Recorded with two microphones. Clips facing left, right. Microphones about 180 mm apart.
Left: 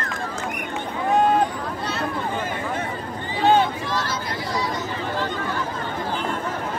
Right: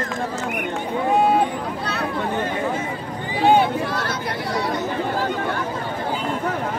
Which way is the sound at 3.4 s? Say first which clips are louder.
Right 2 dB; 15° right (ahead or behind).